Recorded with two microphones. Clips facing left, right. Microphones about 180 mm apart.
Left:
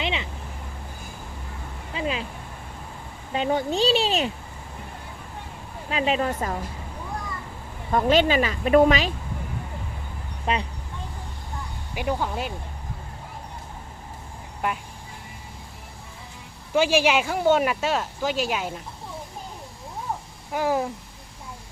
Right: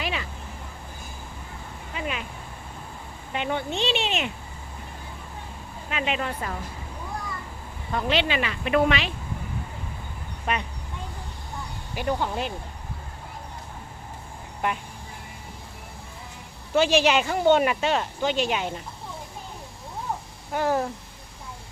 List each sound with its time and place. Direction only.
0.0 s a sound: 20° left (ahead or behind)
1.9 s a sound: 30° left (ahead or behind)
3.3 s a woman's voice: 35° left (ahead or behind)
5.9 s a woman's voice: 35° left (ahead or behind)
7.9 s a woman's voice: 45° left (ahead or behind)
10.4 s speech: 30° left (ahead or behind)
11.9 s speech: 5° left (ahead or behind)
16.7 s speech: 10° left (ahead or behind)
20.5 s speech: 10° left (ahead or behind)